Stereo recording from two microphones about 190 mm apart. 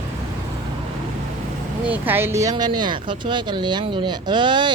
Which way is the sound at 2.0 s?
10° right (ahead or behind).